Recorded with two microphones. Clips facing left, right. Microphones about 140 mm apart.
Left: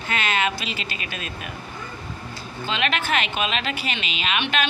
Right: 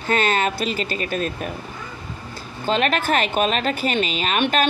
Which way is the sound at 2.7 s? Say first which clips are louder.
Right 5 dB; 45° right (ahead or behind).